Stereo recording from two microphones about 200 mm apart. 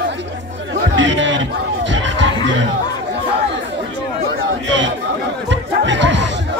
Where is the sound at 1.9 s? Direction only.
65° right (ahead or behind).